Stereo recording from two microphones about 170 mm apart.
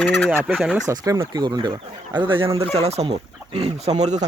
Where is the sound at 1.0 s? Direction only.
20° right (ahead or behind).